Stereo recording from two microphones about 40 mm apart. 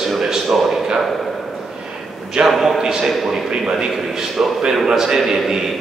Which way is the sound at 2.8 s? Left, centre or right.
Centre.